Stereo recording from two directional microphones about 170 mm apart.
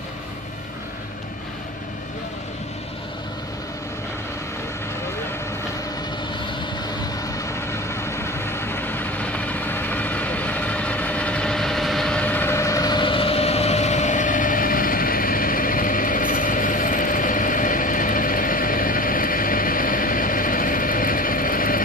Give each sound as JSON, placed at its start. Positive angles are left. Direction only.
{"t": 7.2, "sound": "vehicle", "side_deg": 20}